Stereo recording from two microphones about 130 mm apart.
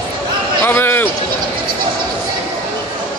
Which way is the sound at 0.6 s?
15° left (ahead or behind).